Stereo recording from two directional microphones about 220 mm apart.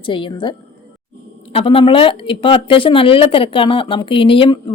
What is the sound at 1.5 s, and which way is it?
Speech, 25° left (ahead or behind).